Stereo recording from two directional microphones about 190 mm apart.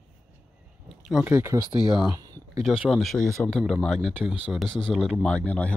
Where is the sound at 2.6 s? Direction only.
Centre (ahead or behind).